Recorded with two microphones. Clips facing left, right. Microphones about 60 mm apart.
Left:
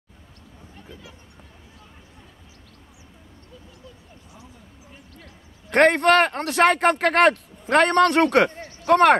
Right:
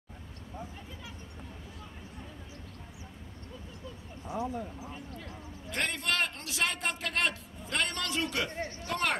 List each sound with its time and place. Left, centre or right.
5.7 s a man's voice: left